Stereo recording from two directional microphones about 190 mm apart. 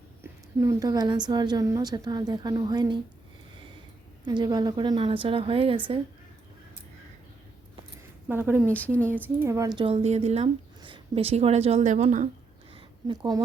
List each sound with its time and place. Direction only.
0.2 s a woman's voice: 15° right (ahead or behind)
4.3 s a woman's voice: 20° right (ahead or behind)
8.3 s speech: 10° right (ahead or behind)
8.7 s a woman's voice: 10° left (ahead or behind)
9.4 s a woman's voice: 15° right (ahead or behind); by 12.3 s 40° right (ahead or behind)
12.7 s a sound: 25° right (ahead or behind)